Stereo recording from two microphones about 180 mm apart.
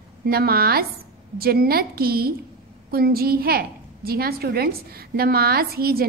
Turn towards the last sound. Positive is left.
turn(degrees=-55)  # may be behind; listen again after turning